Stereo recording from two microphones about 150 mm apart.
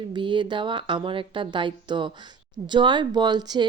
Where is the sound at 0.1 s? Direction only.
30° right (ahead or behind).